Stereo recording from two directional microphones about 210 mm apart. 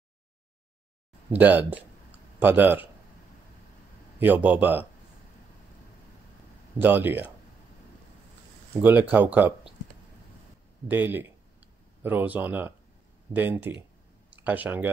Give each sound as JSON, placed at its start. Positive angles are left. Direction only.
{"t": 1.3, "sound": "speech", "side_deg": -10}
{"t": 4.2, "sound": "speech", "side_deg": -10}
{"t": 6.8, "sound": "speech", "side_deg": -10}
{"t": 9.1, "sound": "speech", "side_deg": -10}
{"t": 10.9, "sound": "speech", "side_deg": -10}